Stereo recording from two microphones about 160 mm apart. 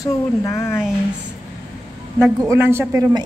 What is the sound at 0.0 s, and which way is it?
Speech, 15° left (ahead or behind).